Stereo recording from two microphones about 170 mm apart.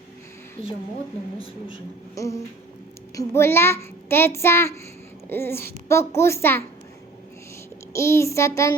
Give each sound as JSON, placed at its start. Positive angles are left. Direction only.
{"t": 2.1, "sound": "a sound", "side_deg": 20}
{"t": 3.2, "sound": "a child's voice", "side_deg": 15}
{"t": 7.9, "sound": "a child's voice", "side_deg": 15}